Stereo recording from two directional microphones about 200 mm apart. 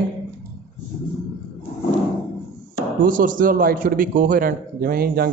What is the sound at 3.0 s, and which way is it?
A man's voice, 40° right (ahead or behind).